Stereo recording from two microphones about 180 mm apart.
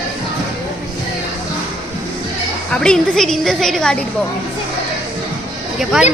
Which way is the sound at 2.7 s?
5° left (ahead or behind).